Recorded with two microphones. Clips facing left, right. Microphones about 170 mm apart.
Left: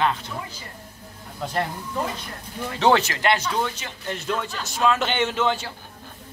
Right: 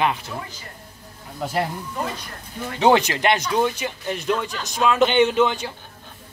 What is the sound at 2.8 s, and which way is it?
A man's voice, 15° right (ahead or behind).